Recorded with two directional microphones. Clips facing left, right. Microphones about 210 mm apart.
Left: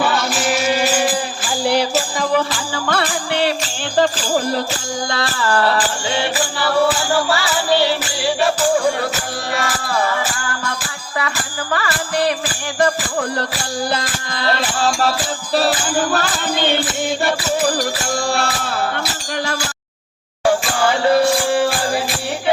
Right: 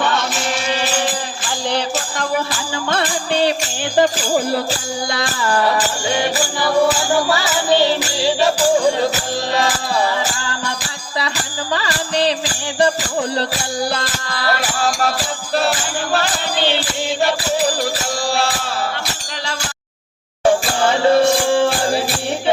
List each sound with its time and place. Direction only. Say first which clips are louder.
0.0 s music: left 1 dB; 5° left (ahead or behind)
2.9 s music: right 1 dB; 20° right (ahead or behind)
3.9 s speech: right 1 dB; 15° right (ahead or behind)
5.1 s music: left 1 dB; 15° right (ahead or behind)
9.6 s music: right 1 dB; 15° right (ahead or behind)
11.7 s speech: even; 20° right (ahead or behind)
14.3 s music: left 1 dB; 25° left (ahead or behind)
16.1 s music: even; 50° left (ahead or behind)
20.4 s music: right 1 dB; 25° right (ahead or behind)